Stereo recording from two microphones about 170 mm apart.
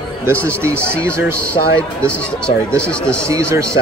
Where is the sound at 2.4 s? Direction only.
5° left (ahead or behind).